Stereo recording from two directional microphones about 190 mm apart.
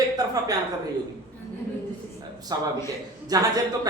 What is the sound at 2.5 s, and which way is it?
Speech, 20° right (ahead or behind).